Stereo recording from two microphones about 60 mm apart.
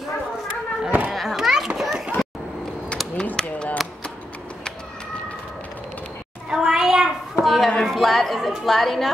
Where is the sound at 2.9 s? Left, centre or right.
Centre.